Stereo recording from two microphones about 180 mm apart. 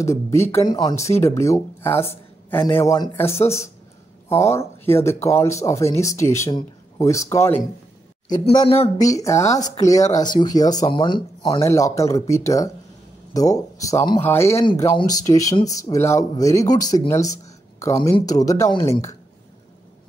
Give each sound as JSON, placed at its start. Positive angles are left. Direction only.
{"t": 0.0, "sound": "speech", "side_deg": 15}
{"t": 3.3, "sound": "speech", "side_deg": 35}
{"t": 4.3, "sound": "speech", "side_deg": 15}
{"t": 8.6, "sound": "speech", "side_deg": 35}
{"t": 8.9, "sound": "speech", "side_deg": 20}